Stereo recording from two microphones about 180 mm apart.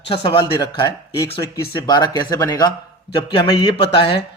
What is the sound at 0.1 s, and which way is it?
A man's voice, 30° left (ahead or behind).